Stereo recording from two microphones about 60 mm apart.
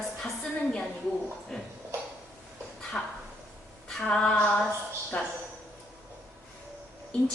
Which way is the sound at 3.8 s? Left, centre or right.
Centre.